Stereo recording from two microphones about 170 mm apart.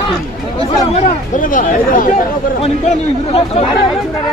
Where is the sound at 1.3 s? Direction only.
50° left (ahead or behind).